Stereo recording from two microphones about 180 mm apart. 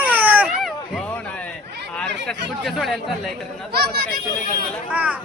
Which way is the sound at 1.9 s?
5° left (ahead or behind).